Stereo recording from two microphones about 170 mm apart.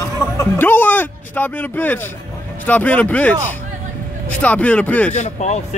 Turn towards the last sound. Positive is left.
turn(degrees=40)  # may be behind; listen again after turning